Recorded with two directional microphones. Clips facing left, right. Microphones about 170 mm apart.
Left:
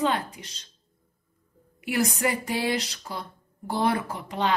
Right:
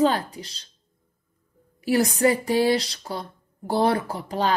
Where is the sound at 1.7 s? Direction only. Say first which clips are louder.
Right 5 dB; 35° right (ahead or behind).